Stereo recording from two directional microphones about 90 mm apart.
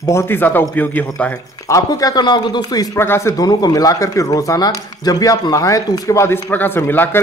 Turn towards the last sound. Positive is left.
turn(degrees=25)  # may be behind; listen again after turning